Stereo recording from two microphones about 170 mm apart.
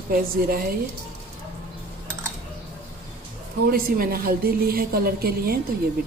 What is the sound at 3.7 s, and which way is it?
A woman's voice, 60° right (ahead or behind).